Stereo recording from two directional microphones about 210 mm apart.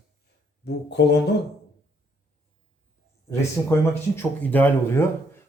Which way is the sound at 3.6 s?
Centre (ahead or behind).